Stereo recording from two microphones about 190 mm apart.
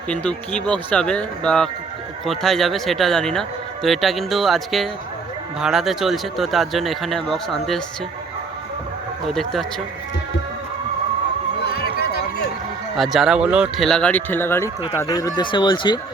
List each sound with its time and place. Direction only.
0.1 s speech: 5° left (ahead or behind)
9.2 s speech: centre (ahead or behind)
11.6 s run: 55° left (ahead or behind)
13.0 s speech: centre (ahead or behind); by 16.0 s 25° left (ahead or behind)